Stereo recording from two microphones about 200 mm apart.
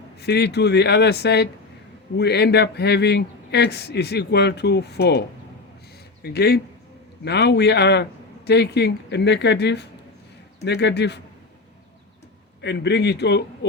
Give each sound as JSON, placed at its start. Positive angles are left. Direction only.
{"t": 0.2, "sound": "a man's voice", "side_deg": 55}
{"t": 6.2, "sound": "a man's voice", "side_deg": 50}
{"t": 12.6, "sound": "a man's voice", "side_deg": 60}